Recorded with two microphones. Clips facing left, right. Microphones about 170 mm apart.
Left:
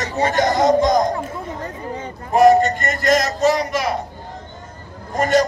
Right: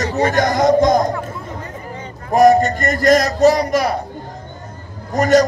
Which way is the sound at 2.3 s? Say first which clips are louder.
Right 1 dB; 40° right (ahead or behind).